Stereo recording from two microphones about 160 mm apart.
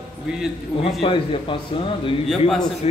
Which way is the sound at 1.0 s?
30° left (ahead or behind).